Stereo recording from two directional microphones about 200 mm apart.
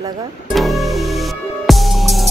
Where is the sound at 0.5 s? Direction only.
Centre (ahead or behind).